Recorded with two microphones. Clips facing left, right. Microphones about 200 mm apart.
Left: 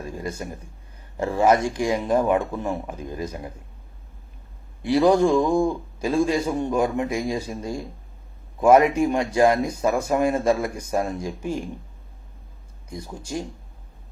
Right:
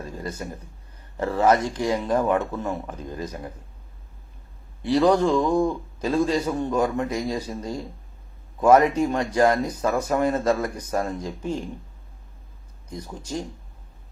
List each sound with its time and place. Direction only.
0.0 s a sound: 10° left (ahead or behind)
1.1 s a man's voice: 10° left (ahead or behind)
4.8 s a man's voice: 10° left (ahead or behind)
12.9 s a man's voice: 10° left (ahead or behind)